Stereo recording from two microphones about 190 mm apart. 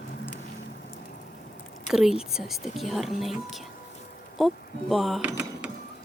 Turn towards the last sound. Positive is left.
turn(degrees=-5)  # may be behind; listen again after turning